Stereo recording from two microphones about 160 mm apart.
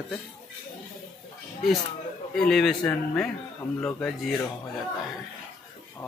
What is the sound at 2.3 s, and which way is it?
A man's voice, 5° left (ahead or behind).